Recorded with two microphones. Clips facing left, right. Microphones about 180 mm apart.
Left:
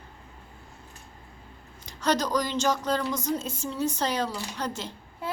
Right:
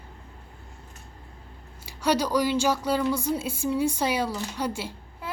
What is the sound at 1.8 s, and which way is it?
Speech, 10° right (ahead or behind).